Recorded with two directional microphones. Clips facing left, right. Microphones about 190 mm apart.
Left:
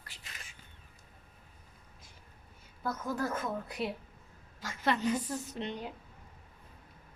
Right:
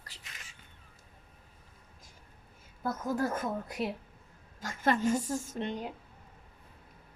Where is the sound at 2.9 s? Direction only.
45° right (ahead or behind).